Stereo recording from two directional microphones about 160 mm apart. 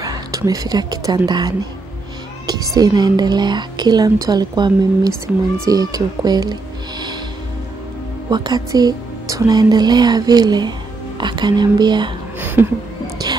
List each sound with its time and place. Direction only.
0.0 s speech: 25° right (ahead or behind)
8.3 s speech: 25° right (ahead or behind)
12.4 s a sound: 10° right (ahead or behind)